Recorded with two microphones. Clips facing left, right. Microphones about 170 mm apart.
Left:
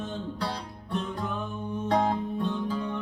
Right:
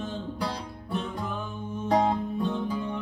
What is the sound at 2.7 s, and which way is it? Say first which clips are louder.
Music: even; 15° right (ahead or behind).